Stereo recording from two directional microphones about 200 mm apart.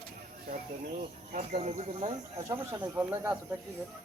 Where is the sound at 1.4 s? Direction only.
35° right (ahead or behind).